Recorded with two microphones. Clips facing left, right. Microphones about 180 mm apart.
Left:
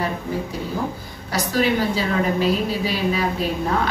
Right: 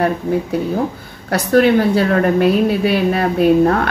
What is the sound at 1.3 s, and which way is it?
A woman's voice, 60° right (ahead or behind).